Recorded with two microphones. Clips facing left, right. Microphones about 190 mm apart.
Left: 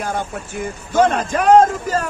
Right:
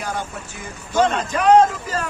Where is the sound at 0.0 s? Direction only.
50° left (ahead or behind).